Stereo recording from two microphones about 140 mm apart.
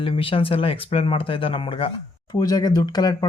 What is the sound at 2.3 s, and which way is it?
Speech, 30° left (ahead or behind).